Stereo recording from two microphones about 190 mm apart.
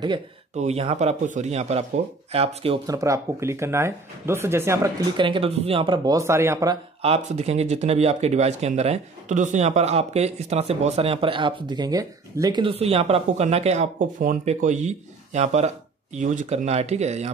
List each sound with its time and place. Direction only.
0.6 s speech: 35° right (ahead or behind)
2.9 s speech: 15° right (ahead or behind)
5.1 s speech: 25° right (ahead or behind)
7.0 s speech: 35° right (ahead or behind)